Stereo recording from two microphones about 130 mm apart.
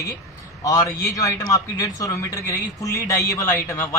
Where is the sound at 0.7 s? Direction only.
25° left (ahead or behind).